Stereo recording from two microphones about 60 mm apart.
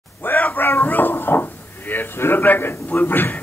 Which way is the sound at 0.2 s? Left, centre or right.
Left.